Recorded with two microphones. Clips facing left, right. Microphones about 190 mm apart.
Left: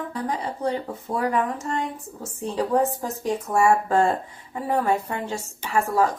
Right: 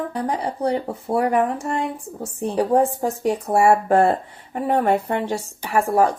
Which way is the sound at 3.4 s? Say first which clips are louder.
Right 3 dB; 35° right (ahead or behind).